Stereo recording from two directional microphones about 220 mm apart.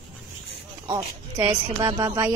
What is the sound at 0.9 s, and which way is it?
Speech, 20° right (ahead or behind).